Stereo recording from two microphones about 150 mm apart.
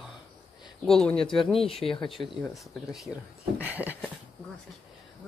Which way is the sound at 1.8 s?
35° left (ahead or behind).